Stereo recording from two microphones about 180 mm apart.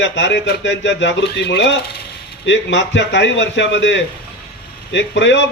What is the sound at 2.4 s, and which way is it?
A man's voice, 90° left.